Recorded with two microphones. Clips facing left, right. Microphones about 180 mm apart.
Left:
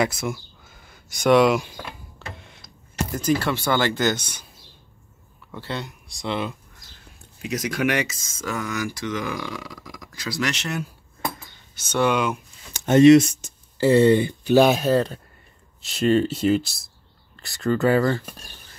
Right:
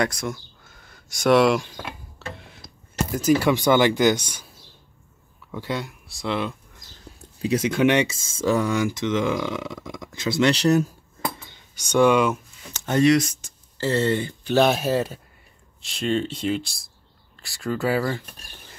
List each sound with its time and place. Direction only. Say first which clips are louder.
0.0 s a sound: left 1 dB; 5° left (ahead or behind)
3.1 s speech: right 4 dB; 10° right (ahead or behind)
5.5 s speech: right 3 dB; 10° right (ahead or behind)
7.4 s speech: right 5 dB; 30° right (ahead or behind)
12.1 s speech: right 4 dB; centre (ahead or behind)
12.7 s speech: left 6 dB; 20° left (ahead or behind)
13.7 s speech: left 7 dB; 15° left (ahead or behind)
14.8 s speech: left 3 dB; 5° right (ahead or behind)